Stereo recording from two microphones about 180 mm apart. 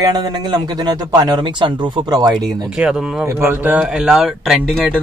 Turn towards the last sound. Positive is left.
turn(degrees=0)  # may be behind; listen again after turning